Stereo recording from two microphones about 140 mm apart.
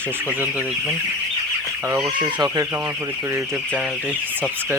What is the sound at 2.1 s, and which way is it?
Speech, 35° right (ahead or behind).